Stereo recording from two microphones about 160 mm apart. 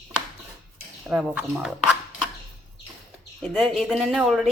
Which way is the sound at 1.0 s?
10° right (ahead or behind).